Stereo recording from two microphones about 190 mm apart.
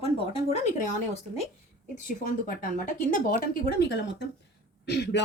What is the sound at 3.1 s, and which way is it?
Speech, 45° left (ahead or behind).